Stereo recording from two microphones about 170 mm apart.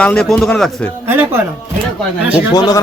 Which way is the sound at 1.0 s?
15° right (ahead or behind).